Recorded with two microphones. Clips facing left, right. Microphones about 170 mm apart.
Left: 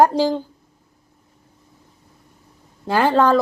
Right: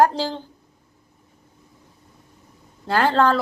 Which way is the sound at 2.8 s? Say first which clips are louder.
Left 2 dB; 15° left (ahead or behind).